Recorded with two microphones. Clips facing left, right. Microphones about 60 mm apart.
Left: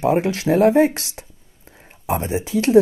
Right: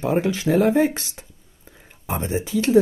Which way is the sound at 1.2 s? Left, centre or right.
Left.